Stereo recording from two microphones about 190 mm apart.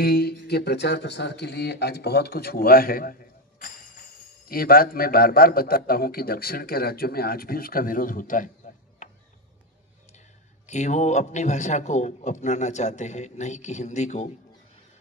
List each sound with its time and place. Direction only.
0.0 s a man's voice: 55° left (ahead or behind)
9.0 s a sound: 40° left (ahead or behind)
10.7 s a man's voice: 40° left (ahead or behind)